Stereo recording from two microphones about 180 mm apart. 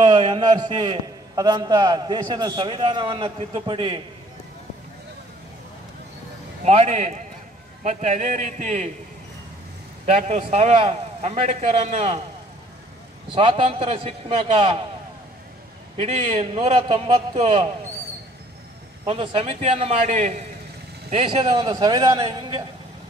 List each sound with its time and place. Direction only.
0.0 s a man's voice: 25° right (ahead or behind)
6.6 s a man's voice: 40° right (ahead or behind)
10.0 s a man's voice: 40° right (ahead or behind)
13.3 s a man's voice: 30° right (ahead or behind)
16.0 s a man's voice: 35° right (ahead or behind)
19.0 s a man's voice: 35° right (ahead or behind)